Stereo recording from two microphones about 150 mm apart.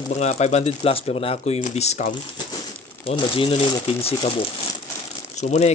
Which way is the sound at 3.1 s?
35° left (ahead or behind).